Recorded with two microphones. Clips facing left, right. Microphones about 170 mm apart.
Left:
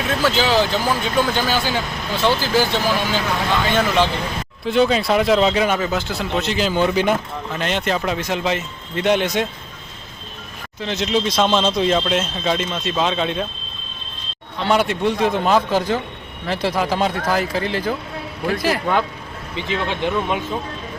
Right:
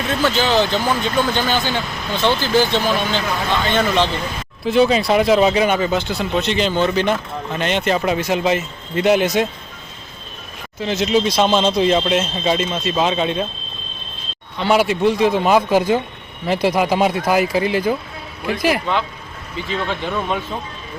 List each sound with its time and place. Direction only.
0.2 s speech: 10° left (ahead or behind)
4.6 s speech: 5° right (ahead or behind)
10.8 s speech: 5° right (ahead or behind)
14.6 s speech: 5° right (ahead or behind)
19.5 s speech: 20° left (ahead or behind)